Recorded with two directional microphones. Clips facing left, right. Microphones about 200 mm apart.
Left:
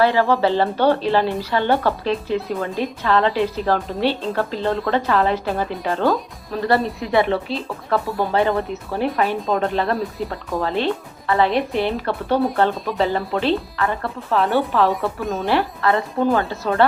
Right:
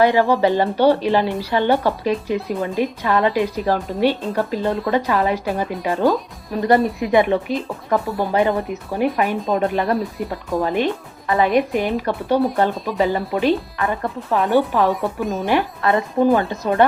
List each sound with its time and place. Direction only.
0.0 s speech: 15° right (ahead or behind)
12.7 s speech: centre (ahead or behind)
13.0 s speech: 10° right (ahead or behind)
15.2 s speech: centre (ahead or behind)
15.4 s speech: 20° right (ahead or behind)